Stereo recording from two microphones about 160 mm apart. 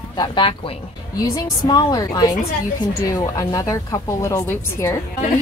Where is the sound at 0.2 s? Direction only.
30° left (ahead or behind).